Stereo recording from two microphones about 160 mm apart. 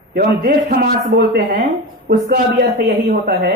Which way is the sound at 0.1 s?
75° right (ahead or behind).